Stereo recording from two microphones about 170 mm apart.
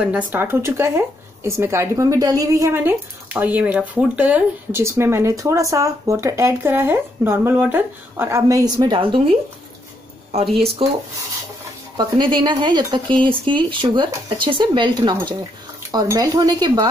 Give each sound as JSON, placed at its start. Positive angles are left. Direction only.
{"t": 0.0, "sound": "speech", "side_deg": -10}
{"t": 12.0, "sound": "speech", "side_deg": -25}